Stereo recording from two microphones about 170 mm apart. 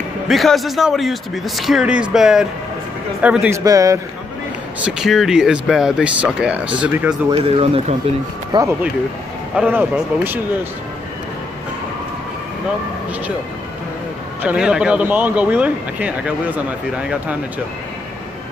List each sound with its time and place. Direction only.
0.3 s speech: centre (ahead or behind); by 4.0 s 20° right (ahead or behind)
4.8 s speech: 5° right (ahead or behind)
7.2 s speech: 35° right (ahead or behind)
9.6 s speech: 10° right (ahead or behind)
14.4 s speech: 5° right (ahead or behind)